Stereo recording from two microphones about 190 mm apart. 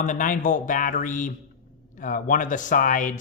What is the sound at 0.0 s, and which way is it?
Speech, 45° left (ahead or behind).